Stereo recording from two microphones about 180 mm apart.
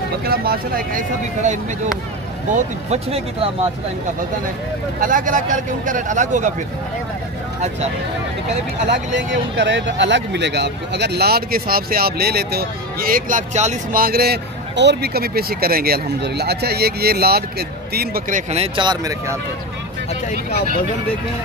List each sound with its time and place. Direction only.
0.2 s speech: 60° right (ahead or behind); by 3.4 s 35° right (ahead or behind)
5.0 s speech: 45° right (ahead or behind)
8.8 s speech: 80° right; by 18.4 s 55° right (ahead or behind)
18.5 s speech: 30° right (ahead or behind)